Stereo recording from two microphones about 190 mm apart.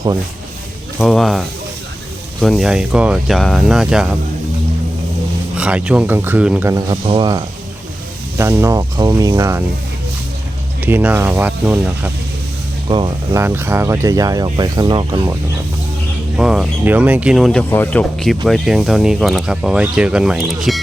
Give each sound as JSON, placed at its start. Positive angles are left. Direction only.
{"t": 0.9, "sound": "speech", "side_deg": 0}
{"t": 5.5, "sound": "speech", "side_deg": -5}
{"t": 6.8, "sound": "speech", "side_deg": -25}
{"t": 8.4, "sound": "speech", "side_deg": -15}
{"t": 10.8, "sound": "speech", "side_deg": -10}
{"t": 12.9, "sound": "speech", "side_deg": -25}
{"t": 13.4, "sound": "speech", "side_deg": -10}
{"t": 16.4, "sound": "speech", "side_deg": -5}